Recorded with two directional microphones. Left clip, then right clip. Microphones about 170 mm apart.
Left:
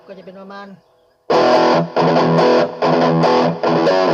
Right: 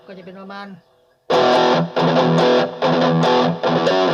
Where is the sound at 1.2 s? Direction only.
45° left (ahead or behind).